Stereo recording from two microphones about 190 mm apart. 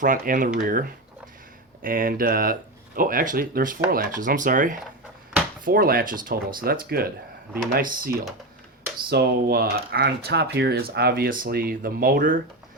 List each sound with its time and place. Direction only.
0.0 s speech: 45° right (ahead or behind)